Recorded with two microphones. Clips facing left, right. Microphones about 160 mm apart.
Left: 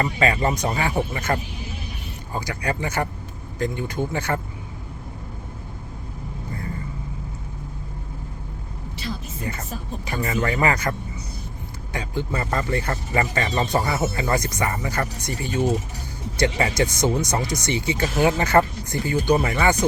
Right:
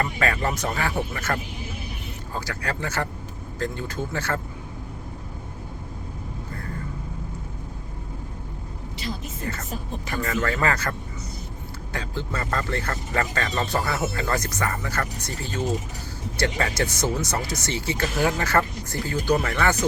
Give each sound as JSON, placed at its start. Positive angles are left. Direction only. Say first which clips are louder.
{"t": 0.0, "sound": "speech", "louder": "left 3 dB", "side_deg": 15}
{"t": 9.4, "sound": "speech", "louder": "left 1 dB", "side_deg": 15}
{"t": 11.9, "sound": "speech", "louder": "left 4 dB", "side_deg": 15}